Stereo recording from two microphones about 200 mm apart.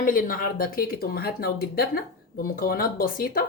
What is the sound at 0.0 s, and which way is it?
Speech, 45° left (ahead or behind).